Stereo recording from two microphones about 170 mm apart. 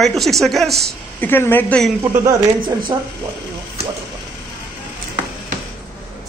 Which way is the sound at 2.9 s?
20° right (ahead or behind).